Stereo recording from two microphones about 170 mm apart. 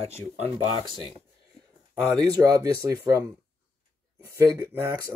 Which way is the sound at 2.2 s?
20° right (ahead or behind).